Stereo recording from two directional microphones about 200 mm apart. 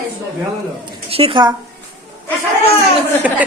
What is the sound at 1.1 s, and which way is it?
Speech, 25° right (ahead or behind).